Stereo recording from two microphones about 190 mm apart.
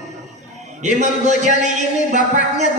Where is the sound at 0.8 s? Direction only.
40° right (ahead or behind).